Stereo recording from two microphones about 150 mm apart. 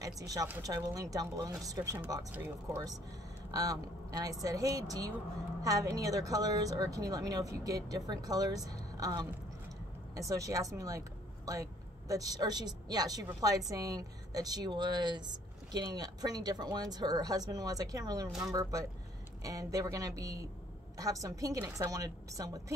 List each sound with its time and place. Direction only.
0.0 s a woman's voice: 25° right (ahead or behind)